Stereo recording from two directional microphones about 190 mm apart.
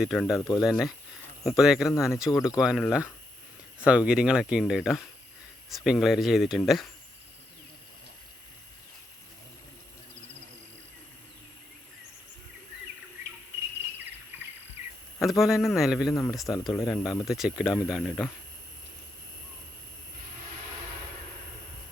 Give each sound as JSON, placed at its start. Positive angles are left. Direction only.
{"t": 0.0, "sound": "speech", "side_deg": 0}
{"t": 0.3, "sound": "speech", "side_deg": 20}
{"t": 0.6, "sound": "speech", "side_deg": 0}
{"t": 14.3, "sound": "bird", "side_deg": -10}
{"t": 15.2, "sound": "speech", "side_deg": 0}